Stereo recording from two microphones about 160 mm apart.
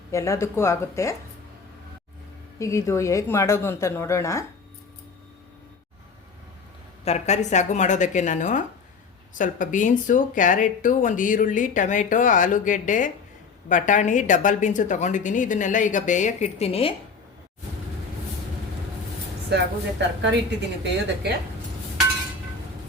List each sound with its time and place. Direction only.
0.1 s a woman's voice: 20° left (ahead or behind)
2.6 s a woman's voice: 20° left (ahead or behind)
7.0 s speech: 45° left (ahead or behind)
19.5 s a woman's voice: 90° right